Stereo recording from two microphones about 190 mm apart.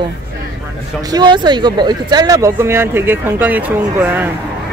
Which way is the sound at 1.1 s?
20° right (ahead or behind).